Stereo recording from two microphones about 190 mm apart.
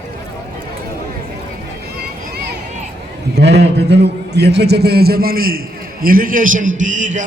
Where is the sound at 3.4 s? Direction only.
60° right (ahead or behind).